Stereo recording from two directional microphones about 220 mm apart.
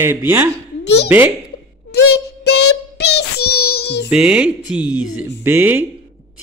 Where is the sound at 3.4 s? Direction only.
45° left (ahead or behind).